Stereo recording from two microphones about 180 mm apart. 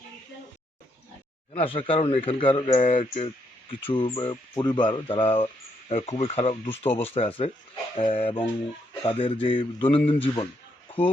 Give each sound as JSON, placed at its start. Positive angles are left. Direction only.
{"t": 1.5, "sound": "speech", "side_deg": 30}